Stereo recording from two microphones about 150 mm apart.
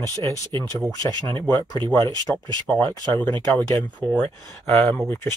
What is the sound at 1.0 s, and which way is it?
Speech, 20° left (ahead or behind).